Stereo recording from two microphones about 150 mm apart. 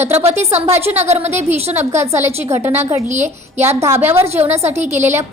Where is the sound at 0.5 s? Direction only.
45° right (ahead or behind).